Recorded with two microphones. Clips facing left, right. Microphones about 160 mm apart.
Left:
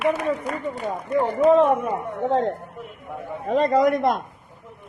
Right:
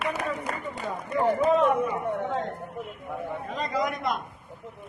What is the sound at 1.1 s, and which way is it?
A man's voice, 45° left (ahead or behind).